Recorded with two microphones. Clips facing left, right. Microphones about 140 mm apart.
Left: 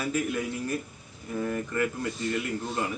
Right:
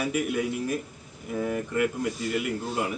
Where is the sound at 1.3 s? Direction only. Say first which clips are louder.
Right 2 dB; 10° right (ahead or behind).